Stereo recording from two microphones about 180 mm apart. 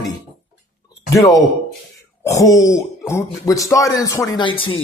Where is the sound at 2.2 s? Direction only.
20° left (ahead or behind).